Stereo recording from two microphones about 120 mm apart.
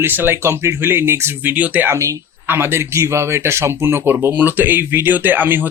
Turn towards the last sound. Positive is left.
turn(degrees=-15)  # may be behind; listen again after turning